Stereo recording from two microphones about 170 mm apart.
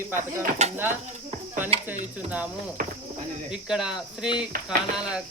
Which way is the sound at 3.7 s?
5° right (ahead or behind).